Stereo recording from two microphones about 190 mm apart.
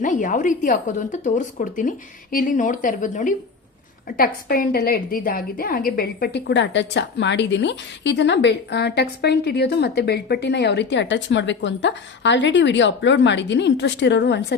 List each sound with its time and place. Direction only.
0.0 s a woman's voice: 45° left (ahead or behind); by 14.4 s 65° left (ahead or behind)